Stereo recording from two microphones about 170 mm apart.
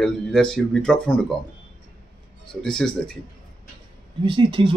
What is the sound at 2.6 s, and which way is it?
Speech, 5° left (ahead or behind).